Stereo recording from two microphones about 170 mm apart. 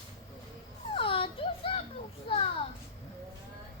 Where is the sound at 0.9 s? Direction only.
30° left (ahead or behind).